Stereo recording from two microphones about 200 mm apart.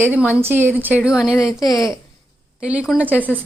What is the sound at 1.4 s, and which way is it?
Speech, 15° left (ahead or behind).